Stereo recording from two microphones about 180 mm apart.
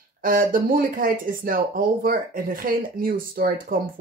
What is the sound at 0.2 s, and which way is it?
Speech, 50° right (ahead or behind).